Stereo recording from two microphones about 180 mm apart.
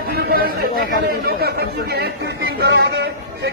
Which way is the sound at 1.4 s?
60° right (ahead or behind).